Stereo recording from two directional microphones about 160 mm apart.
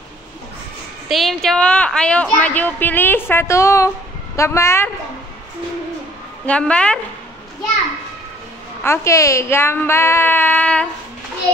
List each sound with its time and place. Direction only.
1.0 s a woman's voice: centre (ahead or behind); by 4.9 s 15° left (ahead or behind)
6.4 s a woman's voice: 5° left (ahead or behind)
8.8 s a woman's voice: 15° left (ahead or behind)